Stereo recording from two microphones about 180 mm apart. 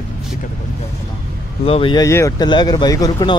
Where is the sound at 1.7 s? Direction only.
30° left (ahead or behind).